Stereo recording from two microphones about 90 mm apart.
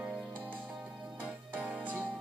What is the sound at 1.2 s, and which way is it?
Music, 20° right (ahead or behind).